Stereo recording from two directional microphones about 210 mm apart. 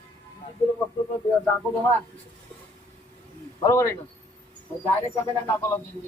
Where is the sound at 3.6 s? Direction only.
15° left (ahead or behind).